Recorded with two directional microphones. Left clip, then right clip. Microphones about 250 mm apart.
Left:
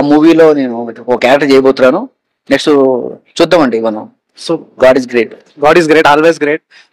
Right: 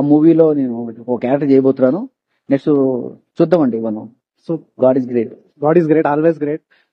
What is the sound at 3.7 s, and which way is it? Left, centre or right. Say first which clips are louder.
Speech: left 8 dB; centre.